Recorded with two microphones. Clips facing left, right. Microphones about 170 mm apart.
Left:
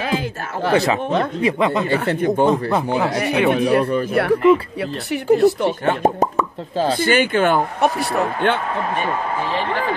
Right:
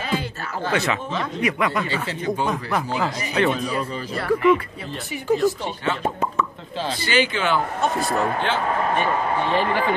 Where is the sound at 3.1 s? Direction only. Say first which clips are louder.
Left 5 dB; 65° left (ahead or behind).